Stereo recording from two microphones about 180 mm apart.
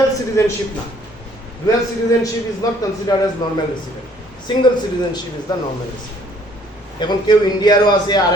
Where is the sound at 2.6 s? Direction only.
20° left (ahead or behind).